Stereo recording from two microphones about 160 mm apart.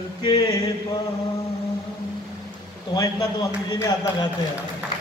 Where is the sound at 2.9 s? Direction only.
25° left (ahead or behind).